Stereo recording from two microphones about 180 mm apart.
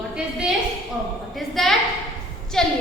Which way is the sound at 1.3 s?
Centre (ahead or behind).